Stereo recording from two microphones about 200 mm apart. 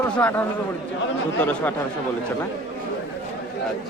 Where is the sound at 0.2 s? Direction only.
10° left (ahead or behind).